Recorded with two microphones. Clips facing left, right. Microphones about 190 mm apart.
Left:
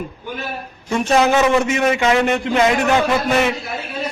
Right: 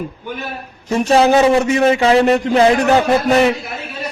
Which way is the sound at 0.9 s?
35° right (ahead or behind).